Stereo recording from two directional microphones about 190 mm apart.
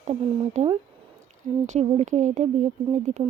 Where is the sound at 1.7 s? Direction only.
35° right (ahead or behind).